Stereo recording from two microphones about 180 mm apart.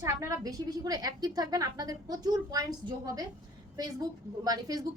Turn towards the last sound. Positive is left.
turn(degrees=-20)  # may be behind; listen again after turning